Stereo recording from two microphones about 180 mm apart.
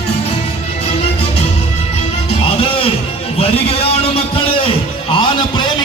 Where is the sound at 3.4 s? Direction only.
30° left (ahead or behind).